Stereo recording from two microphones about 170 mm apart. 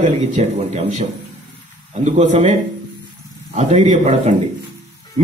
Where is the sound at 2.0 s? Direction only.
45° right (ahead or behind).